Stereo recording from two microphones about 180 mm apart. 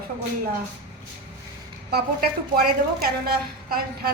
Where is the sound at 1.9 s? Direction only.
55° right (ahead or behind).